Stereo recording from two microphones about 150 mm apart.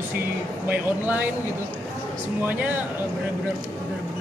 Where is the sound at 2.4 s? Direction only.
10° right (ahead or behind).